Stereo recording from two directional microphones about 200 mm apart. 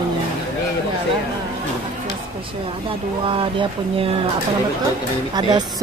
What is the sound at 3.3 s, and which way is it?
Speech, 25° right (ahead or behind).